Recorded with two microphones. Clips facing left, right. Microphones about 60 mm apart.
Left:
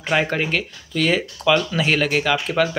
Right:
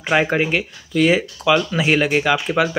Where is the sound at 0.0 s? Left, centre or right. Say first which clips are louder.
Right 3 dB; centre.